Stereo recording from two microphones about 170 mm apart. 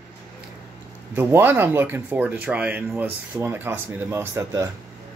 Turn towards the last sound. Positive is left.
turn(degrees=-15)  # may be behind; listen again after turning